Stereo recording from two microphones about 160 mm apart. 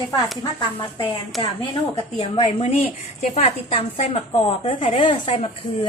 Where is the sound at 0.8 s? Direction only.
30° left (ahead or behind).